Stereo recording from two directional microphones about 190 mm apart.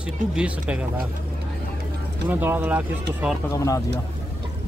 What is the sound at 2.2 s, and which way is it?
Speech, 10° right (ahead or behind).